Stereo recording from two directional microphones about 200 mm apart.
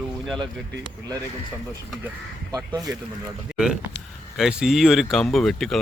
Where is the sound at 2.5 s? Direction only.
15° right (ahead or behind).